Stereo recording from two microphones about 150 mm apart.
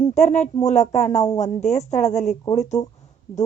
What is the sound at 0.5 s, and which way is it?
Speech, 50° left (ahead or behind).